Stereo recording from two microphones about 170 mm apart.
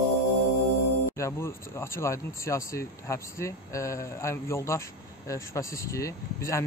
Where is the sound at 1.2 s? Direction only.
15° left (ahead or behind).